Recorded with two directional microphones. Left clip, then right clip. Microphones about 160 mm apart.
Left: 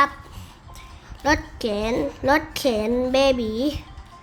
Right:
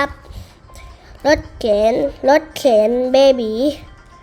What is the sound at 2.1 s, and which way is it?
A woman's voice, 10° right (ahead or behind).